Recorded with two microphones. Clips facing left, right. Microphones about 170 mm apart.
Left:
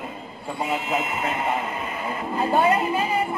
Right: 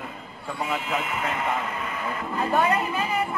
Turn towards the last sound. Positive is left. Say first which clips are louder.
# left 3 dB
turn(degrees=30)  # may be behind; listen again after turning